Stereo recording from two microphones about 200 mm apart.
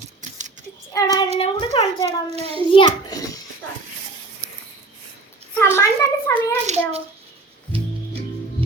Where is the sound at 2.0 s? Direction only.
30° right (ahead or behind).